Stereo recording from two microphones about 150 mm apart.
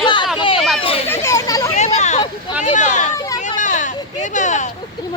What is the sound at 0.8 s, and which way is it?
Children playing, 40° left (ahead or behind).